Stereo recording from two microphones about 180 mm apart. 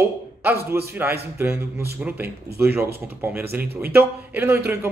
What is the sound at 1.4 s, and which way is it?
Speech, 10° right (ahead or behind).